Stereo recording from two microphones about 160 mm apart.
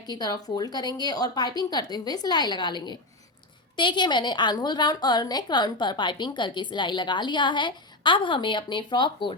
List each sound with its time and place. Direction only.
0.0 s a woman's voice: 25° left (ahead or behind)